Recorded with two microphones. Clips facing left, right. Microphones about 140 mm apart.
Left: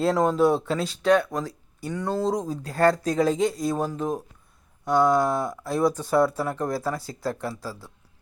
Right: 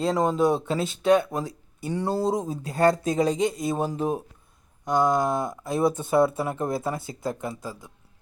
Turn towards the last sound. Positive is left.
turn(degrees=-20)  # may be behind; listen again after turning